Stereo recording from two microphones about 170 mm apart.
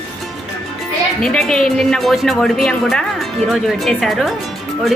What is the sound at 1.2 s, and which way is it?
Speech, 5° left (ahead or behind).